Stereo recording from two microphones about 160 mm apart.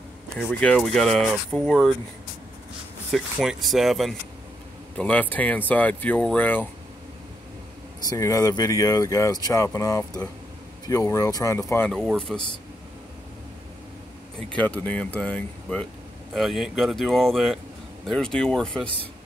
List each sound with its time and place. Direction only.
0.3 s speech: 5° left (ahead or behind)
3.1 s speech: centre (ahead or behind)
8.1 s speech: 20° left (ahead or behind)
11.9 s speech: centre (ahead or behind)
14.5 s speech: 10° left (ahead or behind)